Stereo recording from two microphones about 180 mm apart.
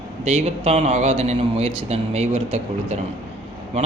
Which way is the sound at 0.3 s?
35° right (ahead or behind).